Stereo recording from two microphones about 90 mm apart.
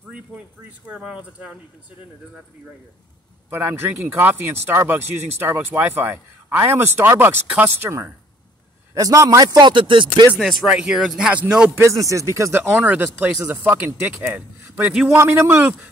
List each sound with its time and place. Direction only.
0.8 s speech: 15° right (ahead or behind)
3.4 s speech: 25° right (ahead or behind)
8.9 s speech: 40° right (ahead or behind)
9.5 s speech: 55° right (ahead or behind)
10.8 s speech: 5° right (ahead or behind)
11.7 s speech: 35° right (ahead or behind)
12.6 s speech: 20° right (ahead or behind)